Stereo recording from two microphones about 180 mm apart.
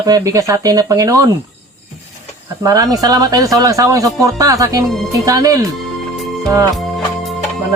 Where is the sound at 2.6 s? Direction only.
20° right (ahead or behind).